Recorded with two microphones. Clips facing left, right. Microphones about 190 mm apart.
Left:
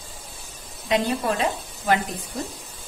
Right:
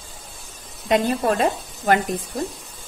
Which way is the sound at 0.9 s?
50° right (ahead or behind).